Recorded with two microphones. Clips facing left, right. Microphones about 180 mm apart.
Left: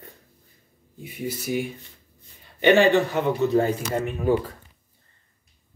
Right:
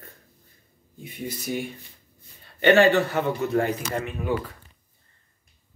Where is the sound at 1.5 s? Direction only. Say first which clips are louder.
Left 3 dB; 5° left (ahead or behind).